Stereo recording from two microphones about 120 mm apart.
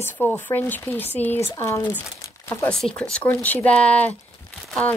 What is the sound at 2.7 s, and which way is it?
Speech, 5° left (ahead or behind).